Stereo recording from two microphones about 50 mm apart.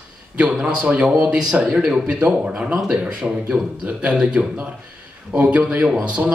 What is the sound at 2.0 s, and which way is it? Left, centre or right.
A man's voice, right.